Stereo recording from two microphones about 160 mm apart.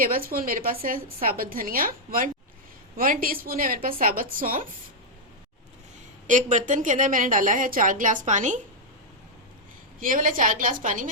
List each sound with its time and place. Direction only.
0.0 s a woman's voice: 65° right (ahead or behind)
6.2 s a woman's voice: 50° right (ahead or behind)
10.0 s a woman's voice: 60° right (ahead or behind)